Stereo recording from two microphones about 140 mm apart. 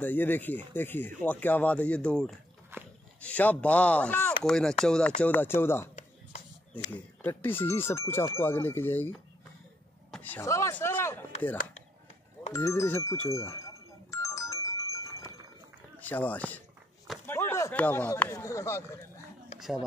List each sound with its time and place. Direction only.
0.0 s speech: 15° left (ahead or behind)
2.7 s a sound: 15° right (ahead or behind)
3.2 s speech: 10° left (ahead or behind)
10.1 s speech: 10° left (ahead or behind)
12.5 s music: 20° left (ahead or behind)
16.0 s speech: 10° left (ahead or behind)
17.3 s a sound: 15° left (ahead or behind)
18.2 s speech: 20° left (ahead or behind)